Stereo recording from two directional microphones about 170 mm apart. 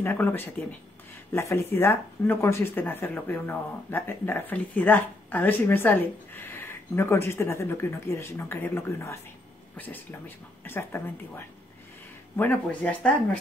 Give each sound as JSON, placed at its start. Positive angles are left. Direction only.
{"t": 0.0, "sound": "speech", "side_deg": 10}